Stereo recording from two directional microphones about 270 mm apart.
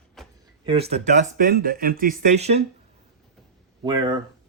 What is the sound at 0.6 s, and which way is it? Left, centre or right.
Speech, right.